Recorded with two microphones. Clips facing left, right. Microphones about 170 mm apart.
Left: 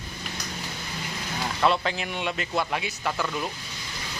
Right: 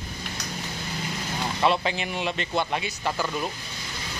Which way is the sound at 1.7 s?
Centre (ahead or behind).